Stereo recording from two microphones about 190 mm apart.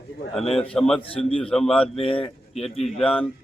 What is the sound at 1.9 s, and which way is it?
Speech, 30° left (ahead or behind).